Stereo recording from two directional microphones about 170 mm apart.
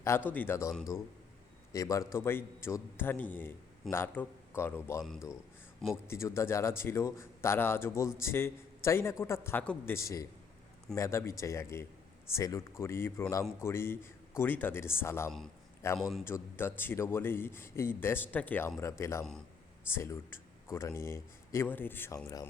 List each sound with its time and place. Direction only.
0.3 s a man's voice: 10° left (ahead or behind)
1.7 s a man's voice: 20° left (ahead or behind)
6.1 s a man's voice: 15° left (ahead or behind)
16.0 s a man's voice: centre (ahead or behind)
16.2 s a man's voice: 15° left (ahead or behind)